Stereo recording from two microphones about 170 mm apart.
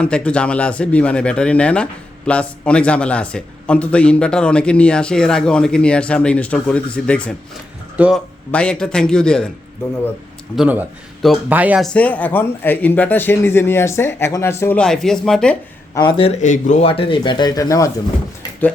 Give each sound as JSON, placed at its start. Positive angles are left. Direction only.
{"t": 0.0, "sound": "speech", "side_deg": 5}
{"t": 7.9, "sound": "speech", "side_deg": -5}
{"t": 8.5, "sound": "a man's voice", "side_deg": 5}
{"t": 10.5, "sound": "a man's voice", "side_deg": -5}
{"t": 11.8, "sound": "speech", "side_deg": 10}
{"t": 16.0, "sound": "speech", "side_deg": 30}
{"t": 16.4, "sound": "speech", "side_deg": 45}